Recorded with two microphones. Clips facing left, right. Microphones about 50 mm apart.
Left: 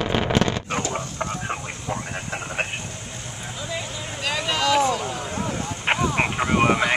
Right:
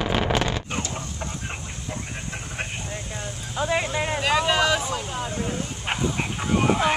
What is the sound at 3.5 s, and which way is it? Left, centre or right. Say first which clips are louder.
Vehicle: right 9 dB; right.